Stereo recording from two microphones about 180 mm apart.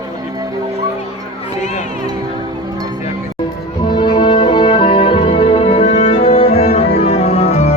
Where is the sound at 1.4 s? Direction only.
40° left (ahead or behind).